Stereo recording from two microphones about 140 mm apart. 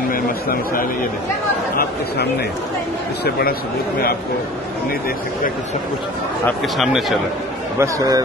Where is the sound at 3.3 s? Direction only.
90° left.